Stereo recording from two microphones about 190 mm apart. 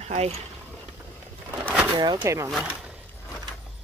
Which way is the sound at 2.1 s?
15° right (ahead or behind).